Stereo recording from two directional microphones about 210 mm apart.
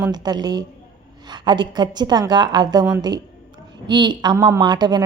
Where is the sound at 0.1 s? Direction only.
20° right (ahead or behind).